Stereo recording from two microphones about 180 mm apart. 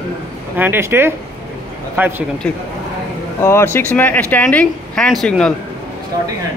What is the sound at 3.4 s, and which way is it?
Speech, 15° left (ahead or behind).